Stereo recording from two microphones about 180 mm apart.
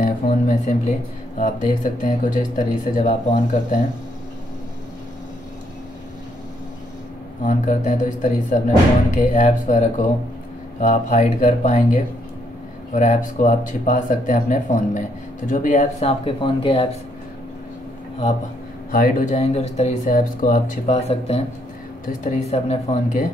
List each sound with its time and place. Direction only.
0.0 s a sound: 45° left (ahead or behind)
1.4 s speech: 45° left (ahead or behind)
7.4 s speech: 45° left (ahead or behind); by 16.9 s 30° left (ahead or behind)
18.9 s speech: 50° left (ahead or behind)